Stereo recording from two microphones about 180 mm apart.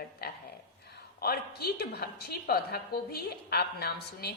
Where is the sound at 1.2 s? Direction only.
60° left (ahead or behind).